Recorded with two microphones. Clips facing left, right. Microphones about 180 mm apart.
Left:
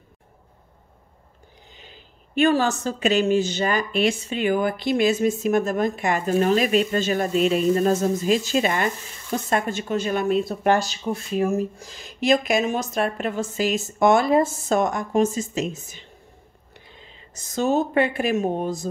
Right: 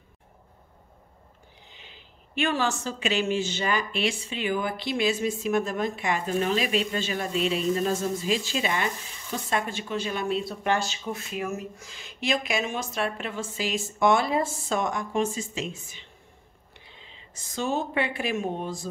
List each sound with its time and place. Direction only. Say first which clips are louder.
1.7 s a woman's voice: left 6 dB; 40° left (ahead or behind)